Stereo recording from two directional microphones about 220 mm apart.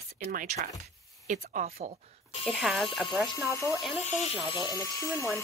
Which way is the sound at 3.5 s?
15° left (ahead or behind).